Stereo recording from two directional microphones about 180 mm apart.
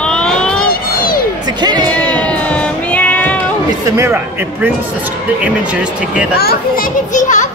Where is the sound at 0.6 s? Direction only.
50° left (ahead or behind).